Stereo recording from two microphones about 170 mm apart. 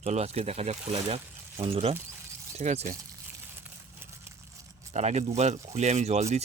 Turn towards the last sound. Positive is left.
turn(degrees=-40)  # may be behind; listen again after turning